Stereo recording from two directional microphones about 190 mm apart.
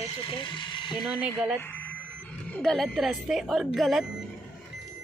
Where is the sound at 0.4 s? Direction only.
25° left (ahead or behind).